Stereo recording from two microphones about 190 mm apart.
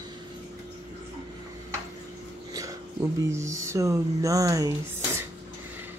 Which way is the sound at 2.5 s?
15° right (ahead or behind).